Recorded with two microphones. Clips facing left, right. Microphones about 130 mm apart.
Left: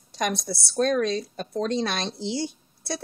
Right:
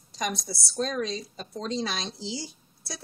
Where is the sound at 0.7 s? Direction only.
60° left (ahead or behind).